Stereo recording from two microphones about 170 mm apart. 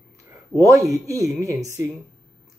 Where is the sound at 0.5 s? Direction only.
20° right (ahead or behind).